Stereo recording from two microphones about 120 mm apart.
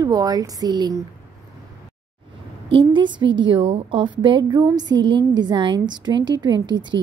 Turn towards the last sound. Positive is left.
turn(degrees=-35)  # may be behind; listen again after turning